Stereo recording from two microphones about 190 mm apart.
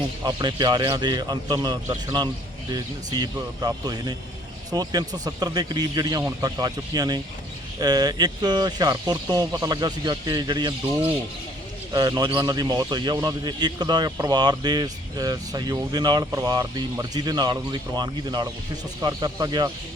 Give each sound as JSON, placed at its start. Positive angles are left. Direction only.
{"t": 0.3, "sound": "speech", "side_deg": -20}
{"t": 11.9, "sound": "speech", "side_deg": -20}